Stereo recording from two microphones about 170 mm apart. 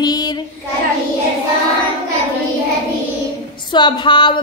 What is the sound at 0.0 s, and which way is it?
Child singing, 25° left (ahead or behind).